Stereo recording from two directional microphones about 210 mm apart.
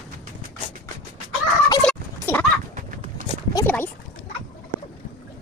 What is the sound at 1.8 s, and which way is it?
Fowl, 10° left (ahead or behind).